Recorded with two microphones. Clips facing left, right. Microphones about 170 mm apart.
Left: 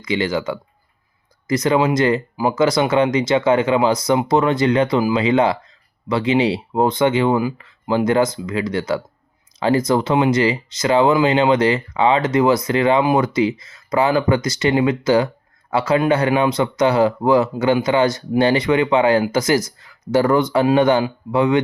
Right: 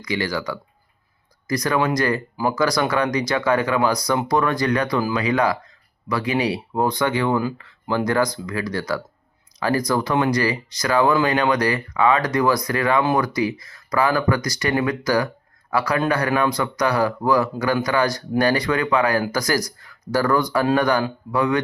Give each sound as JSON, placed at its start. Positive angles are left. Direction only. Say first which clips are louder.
{"t": 0.0, "sound": "speech", "louder": "left 4 dB", "side_deg": 25}